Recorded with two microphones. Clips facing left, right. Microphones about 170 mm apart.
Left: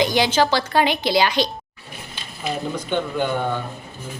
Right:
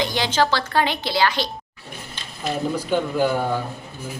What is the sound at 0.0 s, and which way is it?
A woman's voice, 15° left (ahead or behind).